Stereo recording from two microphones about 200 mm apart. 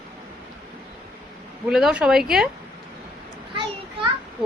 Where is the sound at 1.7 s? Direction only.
5° right (ahead or behind).